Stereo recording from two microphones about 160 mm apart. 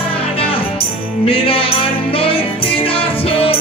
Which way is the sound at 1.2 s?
35° left (ahead or behind).